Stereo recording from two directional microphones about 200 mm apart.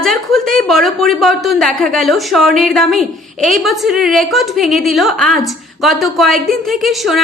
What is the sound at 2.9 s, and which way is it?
Speech, 40° right (ahead or behind).